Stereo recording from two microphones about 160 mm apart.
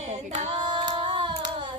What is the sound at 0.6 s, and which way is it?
Female singing, 30° right (ahead or behind).